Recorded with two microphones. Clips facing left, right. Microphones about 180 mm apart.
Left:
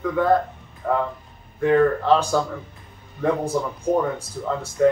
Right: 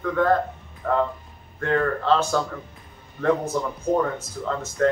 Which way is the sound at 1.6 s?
10° left (ahead or behind).